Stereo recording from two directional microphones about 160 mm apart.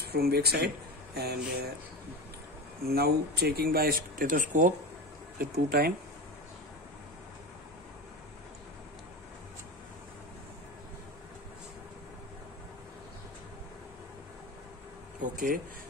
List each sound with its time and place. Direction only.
0.0 s speech: 80° right
2.8 s speech: 75° right (ahead or behind); by 4.7 s 55° right (ahead or behind)
5.4 s speech: 70° right (ahead or behind)
15.2 s a sound: 60° right (ahead or behind)